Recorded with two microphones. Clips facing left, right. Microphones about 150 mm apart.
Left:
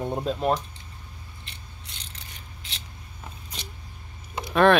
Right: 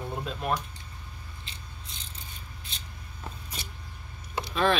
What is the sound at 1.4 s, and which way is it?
Scissors, 75° left (ahead or behind).